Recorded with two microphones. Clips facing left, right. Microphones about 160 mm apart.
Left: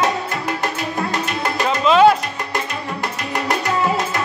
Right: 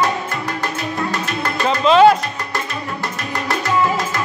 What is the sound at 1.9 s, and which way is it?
Music, 5° left (ahead or behind).